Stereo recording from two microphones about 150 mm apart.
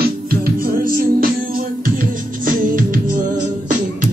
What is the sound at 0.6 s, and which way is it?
Music, 70° right (ahead or behind).